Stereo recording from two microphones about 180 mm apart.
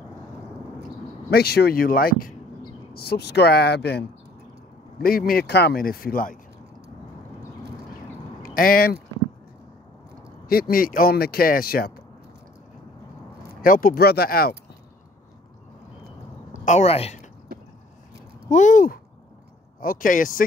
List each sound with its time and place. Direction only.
1.3 s speech: 60° left (ahead or behind)
5.0 s speech: 55° left (ahead or behind)
8.4 s speech: 50° left (ahead or behind)
10.5 s speech: 55° left (ahead or behind)
13.6 s speech: 50° left (ahead or behind)
16.6 s a woman's voice: 40° left (ahead or behind)
17.5 s a sound: 55° right (ahead or behind)
18.5 s speech: 45° left (ahead or behind)